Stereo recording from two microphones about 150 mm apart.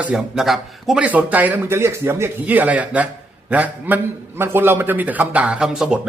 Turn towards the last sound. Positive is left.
turn(degrees=-5)  # may be behind; listen again after turning